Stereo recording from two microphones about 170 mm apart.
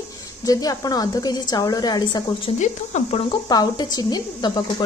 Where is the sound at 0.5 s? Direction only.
20° left (ahead or behind).